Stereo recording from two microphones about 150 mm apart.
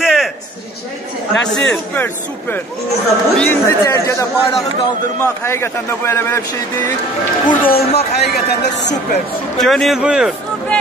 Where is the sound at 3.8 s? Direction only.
20° left (ahead or behind).